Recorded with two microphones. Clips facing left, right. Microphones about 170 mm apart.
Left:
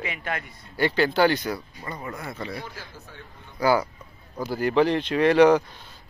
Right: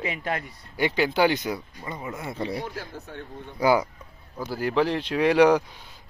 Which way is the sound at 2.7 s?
60° right (ahead or behind).